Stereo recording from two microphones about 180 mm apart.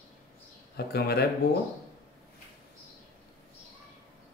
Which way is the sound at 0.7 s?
60° left (ahead or behind).